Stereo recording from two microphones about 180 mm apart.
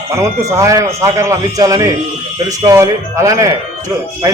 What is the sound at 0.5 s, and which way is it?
Speech, 15° right (ahead or behind).